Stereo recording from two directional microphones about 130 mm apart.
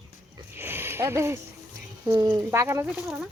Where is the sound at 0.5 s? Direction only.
15° right (ahead or behind).